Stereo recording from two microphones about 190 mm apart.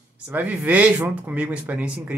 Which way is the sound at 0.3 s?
10° right (ahead or behind).